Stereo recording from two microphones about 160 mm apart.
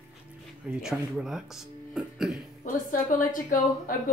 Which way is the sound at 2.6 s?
55° left (ahead or behind).